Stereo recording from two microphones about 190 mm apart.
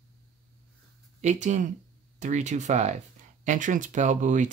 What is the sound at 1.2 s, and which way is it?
Speech, 40° right (ahead or behind).